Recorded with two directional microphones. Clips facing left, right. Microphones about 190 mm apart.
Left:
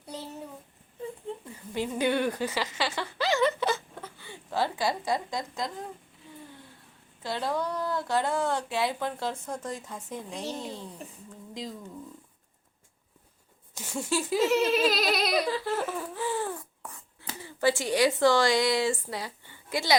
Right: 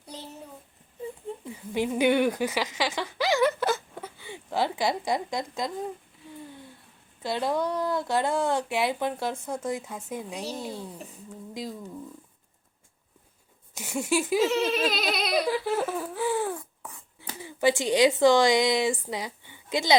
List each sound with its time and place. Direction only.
1.5 s speech: 15° right (ahead or behind)
7.2 s speech: 15° right (ahead or behind)
13.7 s speech: 10° right (ahead or behind)
14.4 s speech: centre (ahead or behind)
15.4 s a sound: 10° right (ahead or behind)